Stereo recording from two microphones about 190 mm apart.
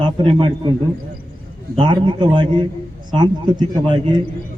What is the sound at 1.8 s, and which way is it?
A man's voice, 25° right (ahead or behind).